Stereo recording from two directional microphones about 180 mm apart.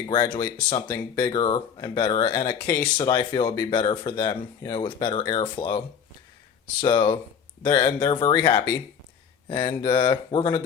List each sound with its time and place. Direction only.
0.1 s speech: 25° left (ahead or behind)
6.8 s speech: 25° left (ahead or behind)